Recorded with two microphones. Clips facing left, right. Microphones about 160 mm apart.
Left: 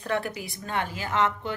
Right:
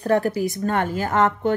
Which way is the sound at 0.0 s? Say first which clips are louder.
Right 10 dB; 40° right (ahead or behind).